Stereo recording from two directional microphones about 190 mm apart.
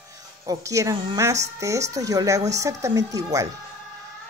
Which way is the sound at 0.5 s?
15° right (ahead or behind).